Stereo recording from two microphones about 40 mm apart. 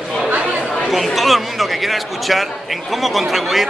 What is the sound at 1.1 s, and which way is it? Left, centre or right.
Speech, centre.